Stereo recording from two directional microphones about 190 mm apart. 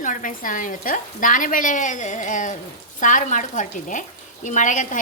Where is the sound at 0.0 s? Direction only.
40° left (ahead or behind).